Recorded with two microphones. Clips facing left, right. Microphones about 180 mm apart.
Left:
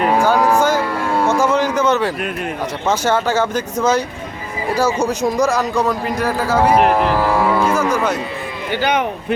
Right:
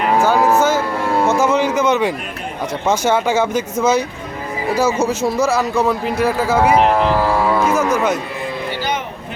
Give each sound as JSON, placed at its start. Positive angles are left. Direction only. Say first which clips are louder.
{"t": 0.3, "sound": "speech", "louder": "even", "side_deg": -5}
{"t": 4.7, "sound": "speech", "louder": "right 1 dB", "side_deg": 10}
{"t": 5.0, "sound": "speech", "louder": "even", "side_deg": -5}
{"t": 7.6, "sound": "music", "louder": "even", "side_deg": -5}
{"t": 7.9, "sound": "speech", "louder": "right 1 dB", "side_deg": -10}
{"t": 8.8, "sound": "speech", "louder": "left 7 dB", "side_deg": 65}